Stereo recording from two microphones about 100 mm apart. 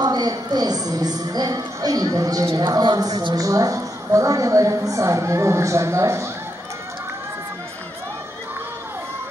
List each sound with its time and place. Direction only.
0.0 s speech: 45° right (ahead or behind)